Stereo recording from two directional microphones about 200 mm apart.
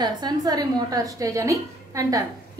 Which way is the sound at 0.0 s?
20° right (ahead or behind).